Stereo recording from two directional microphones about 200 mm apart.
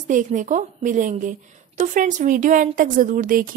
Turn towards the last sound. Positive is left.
turn(degrees=-45)  # may be behind; listen again after turning